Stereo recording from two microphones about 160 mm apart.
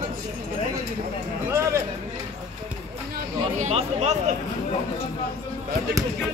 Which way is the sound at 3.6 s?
45° right (ahead or behind).